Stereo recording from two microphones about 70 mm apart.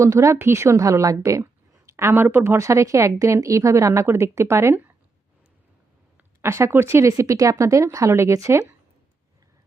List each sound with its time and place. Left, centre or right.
0.0 s a woman's voice: right
6.4 s speech: right
7.1 s a woman's voice: right